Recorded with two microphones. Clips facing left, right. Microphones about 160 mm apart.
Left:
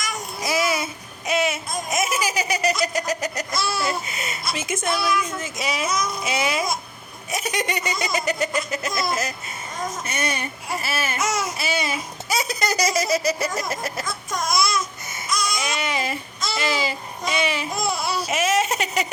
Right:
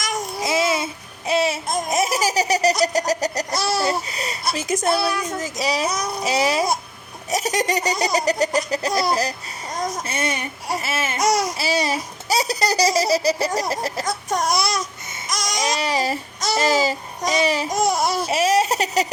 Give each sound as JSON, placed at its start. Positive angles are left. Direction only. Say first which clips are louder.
{"t": 0.4, "sound": "babbling", "louder": "right 2 dB", "side_deg": -25}
{"t": 1.3, "sound": "a sound", "louder": "right 2 dB", "side_deg": -35}
{"t": 1.6, "sound": "baby laughter", "louder": "right 4 dB", "side_deg": -40}
{"t": 9.7, "sound": "speech", "louder": "right 3 dB", "side_deg": -40}
{"t": 10.8, "sound": "babbling", "louder": "even", "side_deg": -25}
{"t": 11.2, "sound": "baby laughter", "louder": "right 9 dB", "side_deg": -35}